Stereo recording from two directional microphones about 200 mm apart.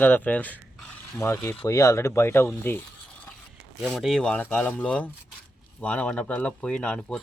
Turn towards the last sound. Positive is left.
turn(degrees=5)  # may be behind; listen again after turning